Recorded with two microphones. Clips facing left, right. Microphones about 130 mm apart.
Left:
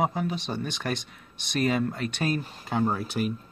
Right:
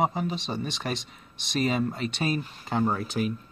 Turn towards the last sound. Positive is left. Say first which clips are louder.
# even
turn(degrees=5)  # may be behind; listen again after turning